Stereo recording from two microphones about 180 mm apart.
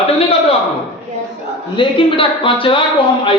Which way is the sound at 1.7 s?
30° left (ahead or behind).